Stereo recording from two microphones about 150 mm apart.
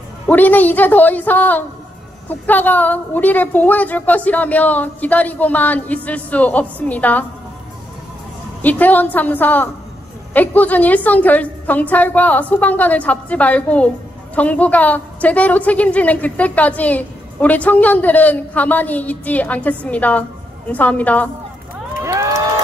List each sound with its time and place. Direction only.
0.3 s a woman's voice: 10° left (ahead or behind)
8.6 s a woman's voice: 10° left (ahead or behind)
22.0 s a sound: 20° right (ahead or behind)